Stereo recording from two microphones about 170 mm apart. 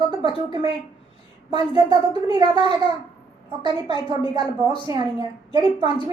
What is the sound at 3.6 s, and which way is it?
A woman's voice, 30° right (ahead or behind).